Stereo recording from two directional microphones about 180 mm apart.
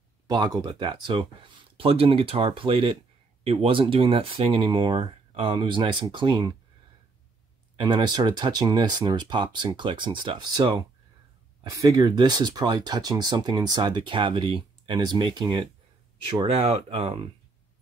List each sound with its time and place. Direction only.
0.3 s speech: 20° right (ahead or behind)
7.7 s speech: 25° right (ahead or behind)